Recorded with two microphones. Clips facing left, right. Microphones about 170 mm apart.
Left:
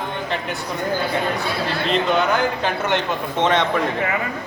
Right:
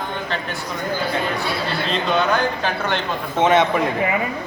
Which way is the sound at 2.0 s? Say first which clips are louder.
Right 2 dB; 20° left (ahead or behind).